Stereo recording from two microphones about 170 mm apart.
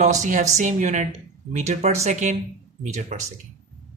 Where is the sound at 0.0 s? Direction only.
45° right (ahead or behind).